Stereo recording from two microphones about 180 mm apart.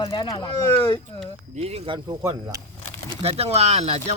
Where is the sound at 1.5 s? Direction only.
35° right (ahead or behind).